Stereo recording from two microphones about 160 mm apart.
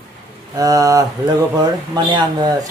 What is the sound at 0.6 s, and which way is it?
Speech, 25° right (ahead or behind).